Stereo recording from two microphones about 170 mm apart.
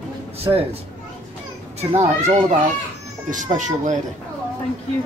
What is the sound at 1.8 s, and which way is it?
Speech, 40° right (ahead or behind).